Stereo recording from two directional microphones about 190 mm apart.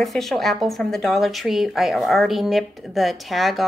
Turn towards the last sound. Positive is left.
turn(degrees=0)  # may be behind; listen again after turning